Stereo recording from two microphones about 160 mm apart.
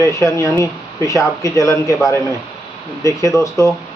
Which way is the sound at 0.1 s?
20° left (ahead or behind).